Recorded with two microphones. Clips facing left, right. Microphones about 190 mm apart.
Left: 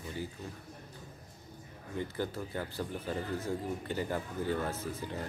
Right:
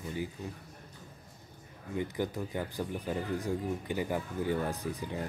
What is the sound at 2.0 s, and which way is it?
Speech, 15° right (ahead or behind).